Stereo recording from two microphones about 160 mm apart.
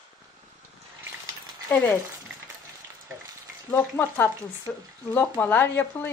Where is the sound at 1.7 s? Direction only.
15° left (ahead or behind).